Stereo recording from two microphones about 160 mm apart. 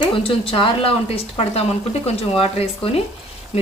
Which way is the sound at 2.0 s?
35° left (ahead or behind).